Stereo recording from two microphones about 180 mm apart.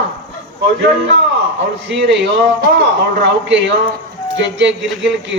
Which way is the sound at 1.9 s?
80° right.